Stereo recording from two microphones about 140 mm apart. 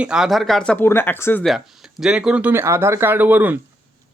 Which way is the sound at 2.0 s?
5° right (ahead or behind).